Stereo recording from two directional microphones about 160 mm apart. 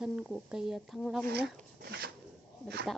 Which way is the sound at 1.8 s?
75° right (ahead or behind).